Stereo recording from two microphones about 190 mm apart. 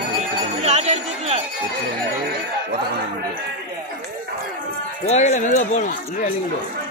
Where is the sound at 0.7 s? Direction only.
35° right (ahead or behind).